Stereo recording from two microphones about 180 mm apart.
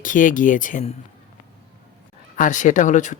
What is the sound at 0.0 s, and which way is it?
Speech, 45° left (ahead or behind).